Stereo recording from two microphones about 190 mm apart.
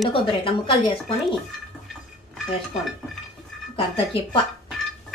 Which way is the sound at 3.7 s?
25° left (ahead or behind).